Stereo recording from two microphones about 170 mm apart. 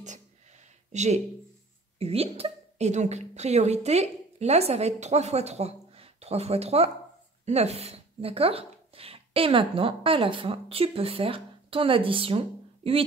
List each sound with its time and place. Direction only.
0.9 s a woman's voice: 40° right (ahead or behind)